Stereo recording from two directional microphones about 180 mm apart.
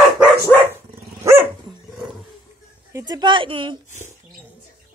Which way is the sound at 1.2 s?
15° right (ahead or behind).